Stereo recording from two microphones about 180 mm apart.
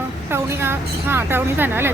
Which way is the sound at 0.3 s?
15° right (ahead or behind).